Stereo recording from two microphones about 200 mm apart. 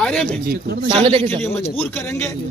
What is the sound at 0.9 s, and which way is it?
Speech, 25° right (ahead or behind).